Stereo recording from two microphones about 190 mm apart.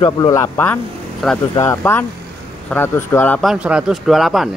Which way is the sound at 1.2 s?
Centre (ahead or behind).